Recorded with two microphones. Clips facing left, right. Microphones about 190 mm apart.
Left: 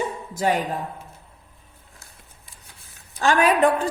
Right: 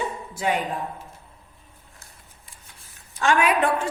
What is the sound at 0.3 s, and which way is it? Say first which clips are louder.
Speech: left 3 dB; 40° left (ahead or behind).